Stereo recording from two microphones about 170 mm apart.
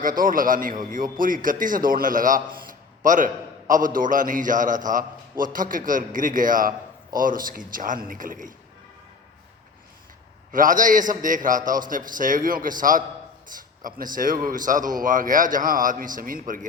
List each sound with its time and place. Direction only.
0.0 s a man's voice: 55° right (ahead or behind)
10.5 s a man's voice: 50° right (ahead or behind)